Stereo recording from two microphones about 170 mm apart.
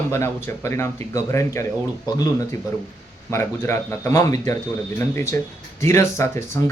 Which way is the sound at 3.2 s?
15° left (ahead or behind).